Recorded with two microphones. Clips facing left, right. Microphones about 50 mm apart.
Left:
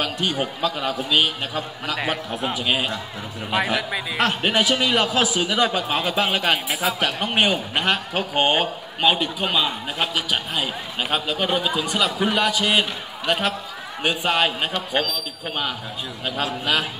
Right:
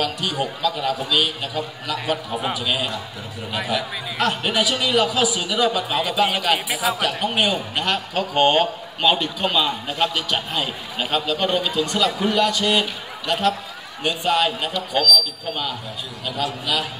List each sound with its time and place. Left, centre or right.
0.0 s a man's voice: left
3.5 s speech: left
4.2 s a man's voice: left
6.5 s speech: centre
7.3 s a man's voice: left
8.4 s a man's voice: centre; by 16.8 s left